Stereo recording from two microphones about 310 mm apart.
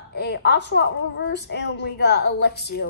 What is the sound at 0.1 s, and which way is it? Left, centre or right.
Speech, left.